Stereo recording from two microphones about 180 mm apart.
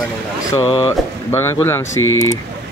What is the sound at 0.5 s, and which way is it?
Speech, 20° left (ahead or behind).